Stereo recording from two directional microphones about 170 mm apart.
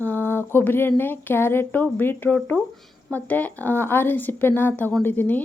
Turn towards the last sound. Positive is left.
turn(degrees=10)  # may be behind; listen again after turning